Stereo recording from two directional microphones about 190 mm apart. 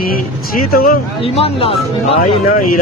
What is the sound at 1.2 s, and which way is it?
Speech, 30° left (ahead or behind).